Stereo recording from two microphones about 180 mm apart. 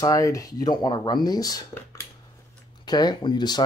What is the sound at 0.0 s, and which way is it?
Speech, 20° left (ahead or behind).